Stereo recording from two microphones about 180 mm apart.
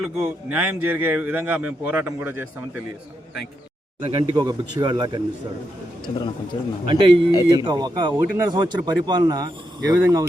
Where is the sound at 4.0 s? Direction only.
30° right (ahead or behind).